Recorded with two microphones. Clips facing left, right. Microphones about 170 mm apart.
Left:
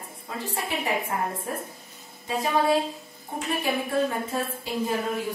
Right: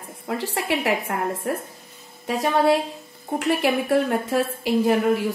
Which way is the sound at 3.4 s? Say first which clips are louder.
Right 6 dB; 75° right (ahead or behind).